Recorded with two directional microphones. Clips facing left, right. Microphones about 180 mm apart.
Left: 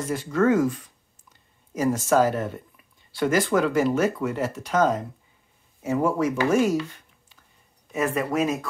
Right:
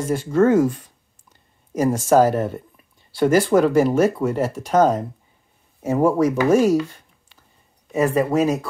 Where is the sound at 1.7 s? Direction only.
45° right (ahead or behind).